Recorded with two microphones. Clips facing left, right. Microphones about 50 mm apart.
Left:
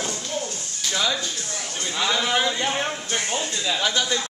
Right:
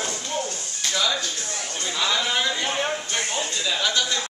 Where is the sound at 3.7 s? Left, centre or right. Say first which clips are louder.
Left 1 dB; centre.